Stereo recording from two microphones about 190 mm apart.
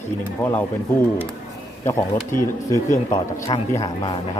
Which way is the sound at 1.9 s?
15° left (ahead or behind).